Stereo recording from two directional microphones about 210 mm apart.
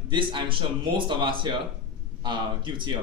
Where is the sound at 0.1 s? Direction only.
25° right (ahead or behind).